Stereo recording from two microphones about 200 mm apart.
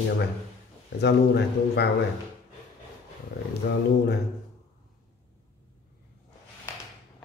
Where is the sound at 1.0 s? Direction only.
55° left (ahead or behind).